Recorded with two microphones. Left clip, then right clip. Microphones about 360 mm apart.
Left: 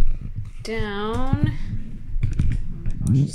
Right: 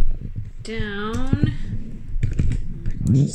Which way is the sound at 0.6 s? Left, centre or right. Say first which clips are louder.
Left 2 dB; centre.